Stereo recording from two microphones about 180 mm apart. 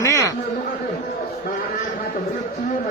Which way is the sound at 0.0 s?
15° left (ahead or behind).